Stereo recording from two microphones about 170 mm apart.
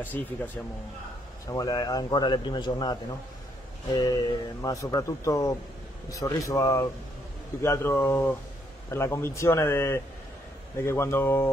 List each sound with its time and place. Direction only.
0.0 s a man's voice: 10° left (ahead or behind)
1.5 s a man's voice: 25° left (ahead or behind)